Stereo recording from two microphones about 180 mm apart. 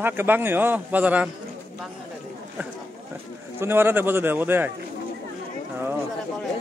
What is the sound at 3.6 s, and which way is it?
Speech, 10° right (ahead or behind).